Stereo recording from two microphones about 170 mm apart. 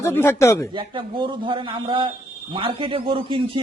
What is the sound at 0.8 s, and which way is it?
A man's voice, 30° right (ahead or behind).